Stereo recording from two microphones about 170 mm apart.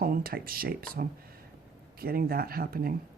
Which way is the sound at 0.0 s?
60° right (ahead or behind).